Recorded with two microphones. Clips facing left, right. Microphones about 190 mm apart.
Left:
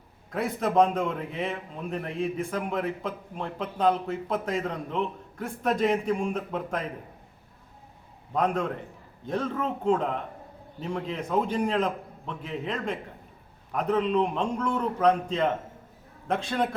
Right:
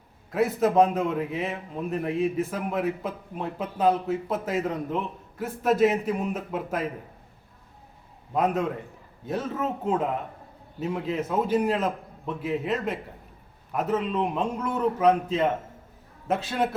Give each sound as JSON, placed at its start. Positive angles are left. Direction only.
{"t": 0.3, "sound": "a man's voice", "side_deg": -5}
{"t": 8.3, "sound": "a man's voice", "side_deg": -5}